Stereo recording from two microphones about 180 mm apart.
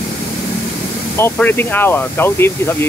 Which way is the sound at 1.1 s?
10° left (ahead or behind).